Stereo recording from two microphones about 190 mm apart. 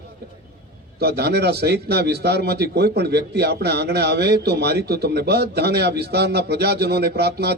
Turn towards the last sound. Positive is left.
turn(degrees=-60)  # may be behind; listen again after turning